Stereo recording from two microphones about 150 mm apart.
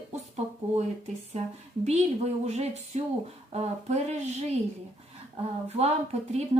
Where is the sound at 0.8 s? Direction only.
45° right (ahead or behind).